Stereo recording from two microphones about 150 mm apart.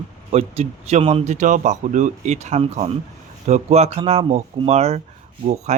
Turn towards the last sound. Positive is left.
turn(degrees=-50)  # may be behind; listen again after turning